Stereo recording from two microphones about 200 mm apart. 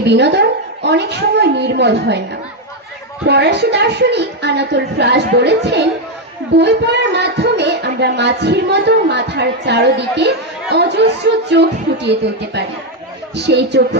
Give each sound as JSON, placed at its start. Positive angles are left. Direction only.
{"t": 0.0, "sound": "a woman's voice", "side_deg": -60}
{"t": 3.2, "sound": "speech", "side_deg": -55}
{"t": 13.3, "sound": "speech", "side_deg": -60}